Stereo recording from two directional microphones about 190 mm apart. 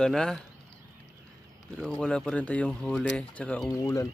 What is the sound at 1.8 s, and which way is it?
Speech, 5° left (ahead or behind).